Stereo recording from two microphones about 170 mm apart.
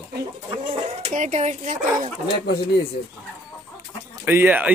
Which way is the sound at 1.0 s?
45° right (ahead or behind).